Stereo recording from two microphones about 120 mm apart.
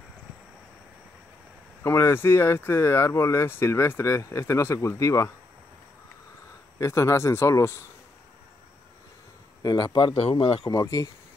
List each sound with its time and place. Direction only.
1.8 s speech: 20° left (ahead or behind)
6.8 s speech: 25° left (ahead or behind)
9.6 s speech: 30° left (ahead or behind)
10.7 s speech: 30° left (ahead or behind)